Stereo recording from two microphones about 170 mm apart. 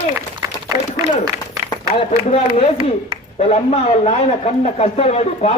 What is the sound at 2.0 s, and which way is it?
A man's voice, 35° left (ahead or behind).